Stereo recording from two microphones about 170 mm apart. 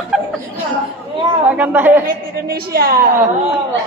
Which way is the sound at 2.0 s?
60° right (ahead or behind).